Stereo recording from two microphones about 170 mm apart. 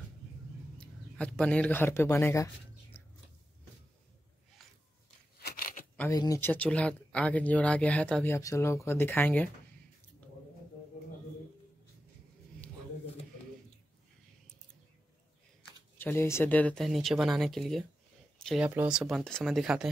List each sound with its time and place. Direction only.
0.7 s speech: 5° left (ahead or behind)
5.4 s a sound: 65° left (ahead or behind)
5.9 s speech: 20° left (ahead or behind)
16.0 s speech: 15° left (ahead or behind); by 19.9 s 5° right (ahead or behind)